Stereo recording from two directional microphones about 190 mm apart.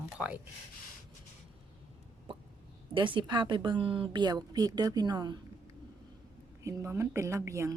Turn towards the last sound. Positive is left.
turn(degrees=-15)  # may be behind; listen again after turning